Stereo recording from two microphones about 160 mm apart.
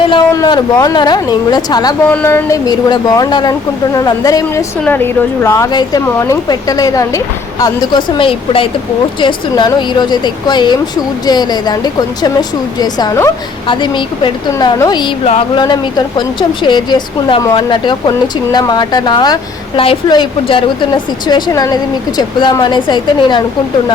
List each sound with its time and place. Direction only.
0.3 s a woman's voice: 25° left (ahead or behind)
2.0 s a woman's voice: 15° left (ahead or behind)
15.2 s speech: 40° left (ahead or behind)
15.6 s a woman's voice: 25° left (ahead or behind)